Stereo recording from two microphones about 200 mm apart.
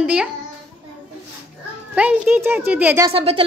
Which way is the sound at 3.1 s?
30° right (ahead or behind).